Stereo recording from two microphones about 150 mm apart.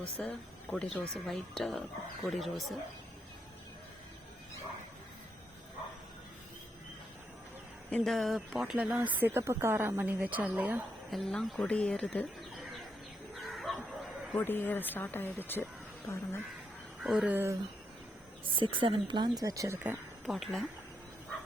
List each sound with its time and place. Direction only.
0.2 s speech: 5° left (ahead or behind)
7.9 s speech: 5° left (ahead or behind)
11.1 s speech: centre (ahead or behind)
13.5 s bow-wow: centre (ahead or behind)
14.3 s speech: 10° left (ahead or behind)
17.0 s speech: 5° right (ahead or behind)
18.5 s a woman's voice: 35° right (ahead or behind); by 20.0 s 15° right (ahead or behind)
20.2 s speech: centre (ahead or behind)